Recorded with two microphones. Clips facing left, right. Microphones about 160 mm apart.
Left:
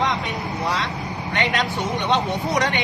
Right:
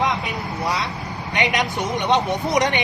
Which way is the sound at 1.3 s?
15° right (ahead or behind).